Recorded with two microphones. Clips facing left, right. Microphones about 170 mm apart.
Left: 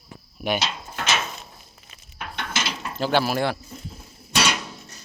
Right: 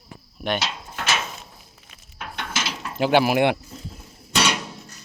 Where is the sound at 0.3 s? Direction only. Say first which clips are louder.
Even; 5° left (ahead or behind).